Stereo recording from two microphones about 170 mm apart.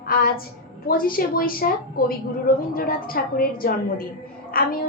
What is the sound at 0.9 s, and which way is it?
Child singing, 55° left (ahead or behind).